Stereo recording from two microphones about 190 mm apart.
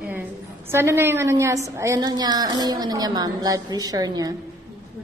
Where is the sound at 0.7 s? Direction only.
15° right (ahead or behind).